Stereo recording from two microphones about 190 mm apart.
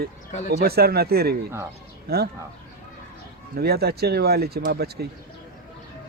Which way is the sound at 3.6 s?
55° right (ahead or behind).